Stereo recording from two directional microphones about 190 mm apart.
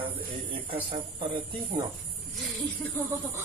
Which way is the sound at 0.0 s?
25° right (ahead or behind).